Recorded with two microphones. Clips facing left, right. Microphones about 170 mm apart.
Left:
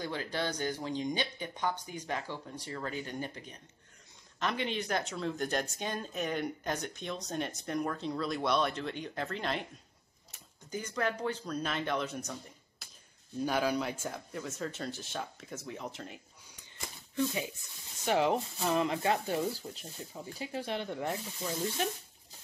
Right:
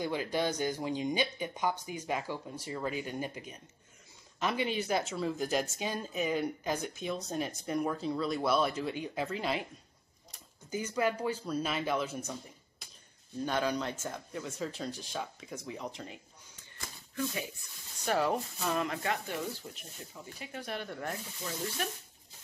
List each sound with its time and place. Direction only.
0.0 s speech: 15° right (ahead or behind)
10.7 s speech: 10° right (ahead or behind)
18.0 s speech: 20° left (ahead or behind)